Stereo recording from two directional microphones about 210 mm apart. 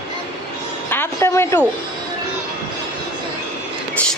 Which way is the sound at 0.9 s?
10° left (ahead or behind).